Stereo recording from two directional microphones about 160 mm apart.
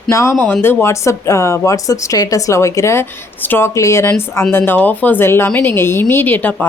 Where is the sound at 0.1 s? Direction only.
15° left (ahead or behind).